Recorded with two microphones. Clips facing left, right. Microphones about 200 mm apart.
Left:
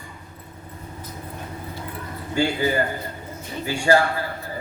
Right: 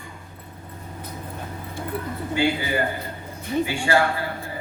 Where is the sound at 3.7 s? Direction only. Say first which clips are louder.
Left 6 dB; 40° left (ahead or behind).